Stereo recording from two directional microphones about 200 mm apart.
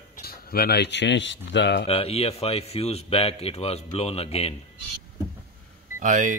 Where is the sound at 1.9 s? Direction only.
30° left (ahead or behind).